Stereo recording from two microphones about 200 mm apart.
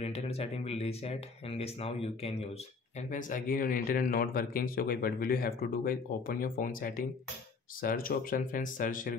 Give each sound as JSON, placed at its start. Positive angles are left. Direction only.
{"t": 0.0, "sound": "speech", "side_deg": 30}
{"t": 3.0, "sound": "speech", "side_deg": 40}